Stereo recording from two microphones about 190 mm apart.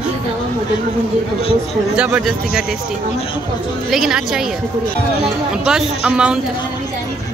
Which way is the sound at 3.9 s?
5° right (ahead or behind).